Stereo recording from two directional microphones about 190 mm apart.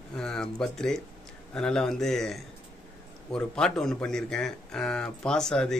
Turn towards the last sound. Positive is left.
turn(degrees=5)  # may be behind; listen again after turning